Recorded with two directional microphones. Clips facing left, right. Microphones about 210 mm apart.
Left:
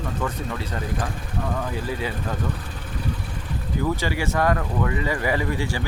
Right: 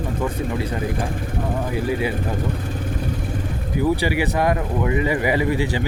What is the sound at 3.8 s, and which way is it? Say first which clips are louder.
Speech: right 6 dB; 15° right (ahead or behind).